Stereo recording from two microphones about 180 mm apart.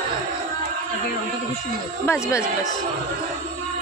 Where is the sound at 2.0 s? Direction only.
15° left (ahead or behind).